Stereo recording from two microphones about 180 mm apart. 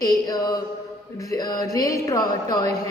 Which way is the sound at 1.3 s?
20° left (ahead or behind).